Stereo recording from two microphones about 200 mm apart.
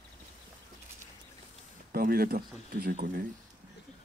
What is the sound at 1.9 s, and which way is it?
Speech, 45° right (ahead or behind).